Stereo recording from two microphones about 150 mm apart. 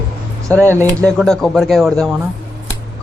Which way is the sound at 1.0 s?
5° left (ahead or behind).